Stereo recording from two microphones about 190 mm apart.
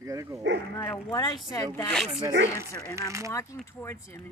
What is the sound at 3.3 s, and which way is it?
Speech, 15° left (ahead or behind).